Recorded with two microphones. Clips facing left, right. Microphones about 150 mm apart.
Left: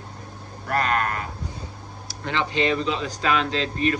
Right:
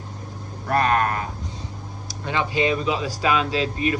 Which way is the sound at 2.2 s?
15° right (ahead or behind).